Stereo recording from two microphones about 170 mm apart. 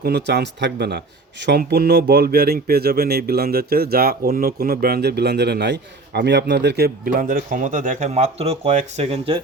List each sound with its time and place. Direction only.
0.0 s speech: 80° right; by 9.4 s 35° right (ahead or behind)